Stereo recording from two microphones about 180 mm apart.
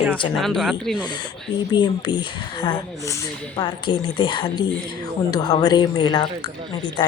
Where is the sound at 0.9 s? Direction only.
25° left (ahead or behind).